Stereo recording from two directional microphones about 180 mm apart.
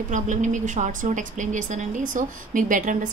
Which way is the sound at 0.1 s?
45° right (ahead or behind).